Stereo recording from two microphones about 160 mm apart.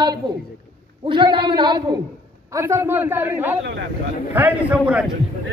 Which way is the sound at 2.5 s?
15° right (ahead or behind).